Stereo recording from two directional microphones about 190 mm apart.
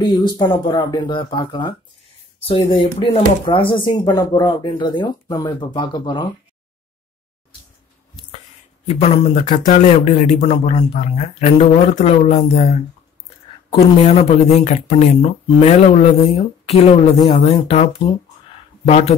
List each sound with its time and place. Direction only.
0.0 s speech: 20° left (ahead or behind)
8.8 s speech: 35° left (ahead or behind)
14.0 s speech: 35° left (ahead or behind)